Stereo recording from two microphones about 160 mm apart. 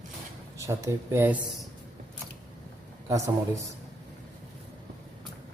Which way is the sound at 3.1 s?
20° right (ahead or behind).